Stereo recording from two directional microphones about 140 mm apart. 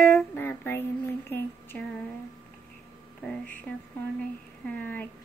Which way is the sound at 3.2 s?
10° left (ahead or behind).